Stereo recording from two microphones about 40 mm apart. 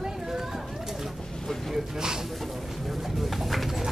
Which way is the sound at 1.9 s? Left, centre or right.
Centre.